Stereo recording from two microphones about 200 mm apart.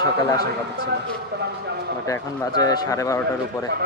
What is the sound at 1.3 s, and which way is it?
Speech, 50° right (ahead or behind).